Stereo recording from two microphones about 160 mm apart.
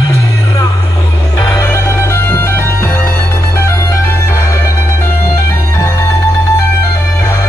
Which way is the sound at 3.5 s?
15° left (ahead or behind).